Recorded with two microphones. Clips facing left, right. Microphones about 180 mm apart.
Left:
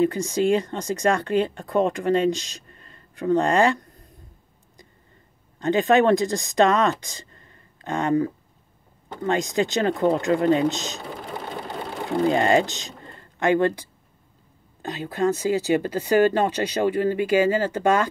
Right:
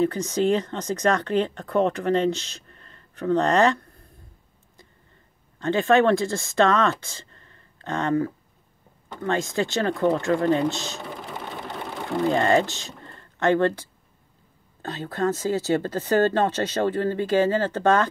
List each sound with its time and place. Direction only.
0.0 s speech: 10° left (ahead or behind)
5.6 s speech: 15° left (ahead or behind)
12.3 s speech: 15° left (ahead or behind)